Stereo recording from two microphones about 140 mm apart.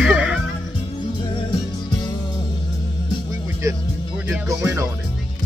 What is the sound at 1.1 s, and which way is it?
Music, 30° left (ahead or behind).